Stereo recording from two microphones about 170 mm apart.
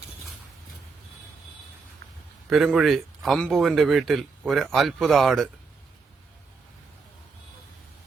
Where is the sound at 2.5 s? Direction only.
Centre (ahead or behind).